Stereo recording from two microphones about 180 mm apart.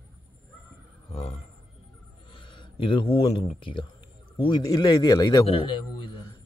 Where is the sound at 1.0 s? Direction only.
35° left (ahead or behind).